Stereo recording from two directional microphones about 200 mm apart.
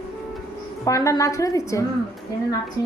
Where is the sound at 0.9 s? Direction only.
15° left (ahead or behind).